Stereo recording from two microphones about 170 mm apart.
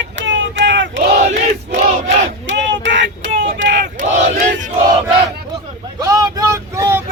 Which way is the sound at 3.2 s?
50° right (ahead or behind).